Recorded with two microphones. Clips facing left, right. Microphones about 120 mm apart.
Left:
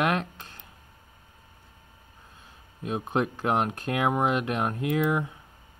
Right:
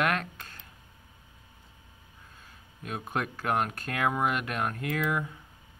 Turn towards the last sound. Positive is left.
turn(degrees=20)  # may be behind; listen again after turning